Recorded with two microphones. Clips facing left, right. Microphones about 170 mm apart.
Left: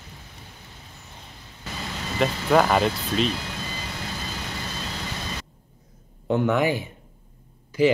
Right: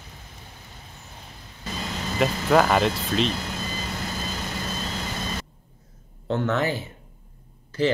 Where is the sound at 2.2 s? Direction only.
Centre (ahead or behind).